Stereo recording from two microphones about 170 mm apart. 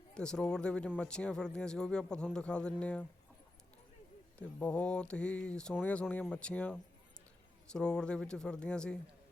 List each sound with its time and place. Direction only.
0.1 s a man's voice: 5° left (ahead or behind)
4.4 s a man's voice: 5° left (ahead or behind)